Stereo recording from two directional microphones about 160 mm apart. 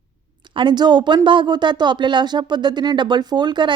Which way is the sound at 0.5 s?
30° right (ahead or behind).